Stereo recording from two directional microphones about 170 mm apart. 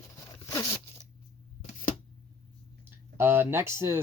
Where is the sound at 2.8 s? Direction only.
10° right (ahead or behind).